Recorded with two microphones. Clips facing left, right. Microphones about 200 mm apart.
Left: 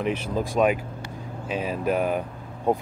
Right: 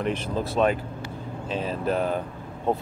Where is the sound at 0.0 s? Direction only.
10° left (ahead or behind).